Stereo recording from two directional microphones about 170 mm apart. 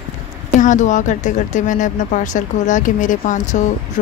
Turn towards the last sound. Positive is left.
turn(degrees=45)  # may be behind; listen again after turning